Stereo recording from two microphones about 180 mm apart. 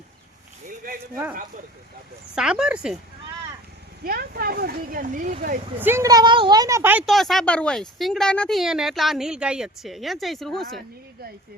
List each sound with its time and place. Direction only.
2.3 s speech: 5° right (ahead or behind)
4.0 s speech: 55° right (ahead or behind)
5.8 s speech: 15° right (ahead or behind); by 10.8 s centre (ahead or behind)